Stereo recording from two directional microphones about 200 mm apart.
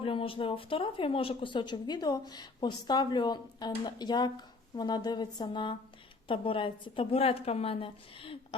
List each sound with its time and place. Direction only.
0.0 s speech: 25° left (ahead or behind)